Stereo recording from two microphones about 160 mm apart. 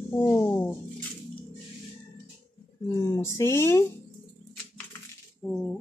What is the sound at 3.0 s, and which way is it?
Speech, 20° left (ahead or behind).